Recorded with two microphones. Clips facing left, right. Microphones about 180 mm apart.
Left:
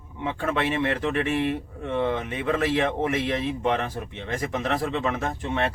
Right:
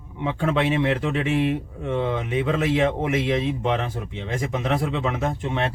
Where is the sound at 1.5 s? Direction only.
15° right (ahead or behind).